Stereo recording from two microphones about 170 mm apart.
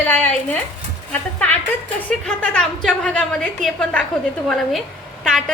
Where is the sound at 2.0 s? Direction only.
10° left (ahead or behind).